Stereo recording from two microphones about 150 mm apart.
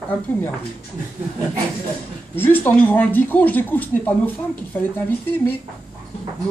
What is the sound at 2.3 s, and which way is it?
Speech, 15° left (ahead or behind).